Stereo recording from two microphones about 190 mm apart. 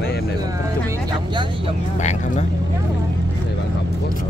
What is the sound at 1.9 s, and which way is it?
Speech, 40° left (ahead or behind).